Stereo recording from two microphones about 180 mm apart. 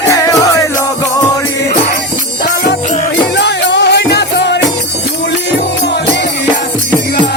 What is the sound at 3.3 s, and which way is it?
Music, 75° left (ahead or behind).